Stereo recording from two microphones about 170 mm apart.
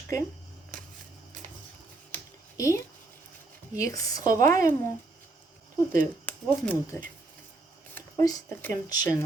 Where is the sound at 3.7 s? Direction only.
20° left (ahead or behind).